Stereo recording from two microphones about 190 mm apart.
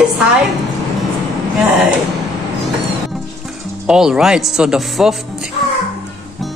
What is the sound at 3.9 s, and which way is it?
Speech, 5° right (ahead or behind).